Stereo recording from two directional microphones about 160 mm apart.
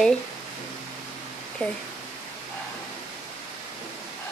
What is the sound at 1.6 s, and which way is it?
Speech, 10° left (ahead or behind).